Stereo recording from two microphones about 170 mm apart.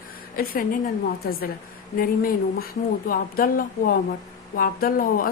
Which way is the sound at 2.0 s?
55° left (ahead or behind).